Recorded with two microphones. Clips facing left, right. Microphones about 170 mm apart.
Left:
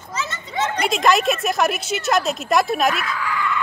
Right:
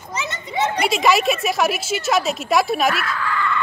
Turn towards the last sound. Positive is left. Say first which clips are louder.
# right 1 dB
turn(degrees=10)  # may be behind; listen again after turning